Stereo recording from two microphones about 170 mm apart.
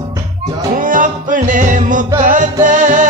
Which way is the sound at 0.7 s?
50° right (ahead or behind).